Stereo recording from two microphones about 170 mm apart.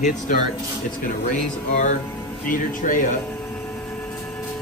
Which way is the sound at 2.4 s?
50° left (ahead or behind).